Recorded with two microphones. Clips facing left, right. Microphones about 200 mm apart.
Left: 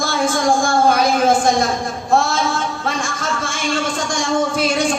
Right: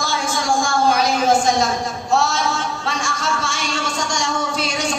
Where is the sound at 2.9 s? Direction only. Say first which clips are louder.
Right 1 dB; 50° left (ahead or behind).